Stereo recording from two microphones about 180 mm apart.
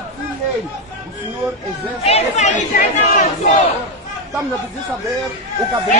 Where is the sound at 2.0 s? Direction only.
35° left (ahead or behind).